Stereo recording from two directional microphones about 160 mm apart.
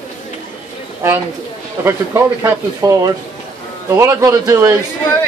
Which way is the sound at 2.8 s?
20° right (ahead or behind).